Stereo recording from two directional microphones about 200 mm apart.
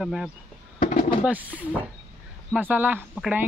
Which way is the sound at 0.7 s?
40° left (ahead or behind).